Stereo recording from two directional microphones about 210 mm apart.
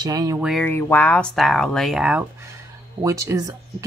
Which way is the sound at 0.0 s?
15° right (ahead or behind).